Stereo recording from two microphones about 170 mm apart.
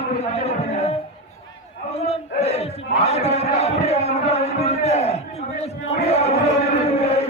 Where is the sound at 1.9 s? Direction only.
35° left (ahead or behind).